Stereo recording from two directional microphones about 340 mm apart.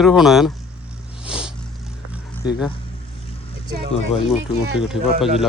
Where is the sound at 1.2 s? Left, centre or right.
Centre.